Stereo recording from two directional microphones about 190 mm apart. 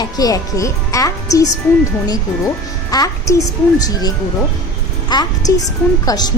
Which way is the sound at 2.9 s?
15° left (ahead or behind).